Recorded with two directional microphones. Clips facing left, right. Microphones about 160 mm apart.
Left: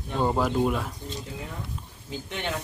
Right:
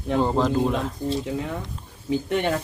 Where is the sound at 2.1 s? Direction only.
55° right (ahead or behind).